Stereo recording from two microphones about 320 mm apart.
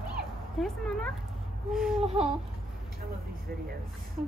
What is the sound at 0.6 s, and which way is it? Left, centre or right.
Speech, centre.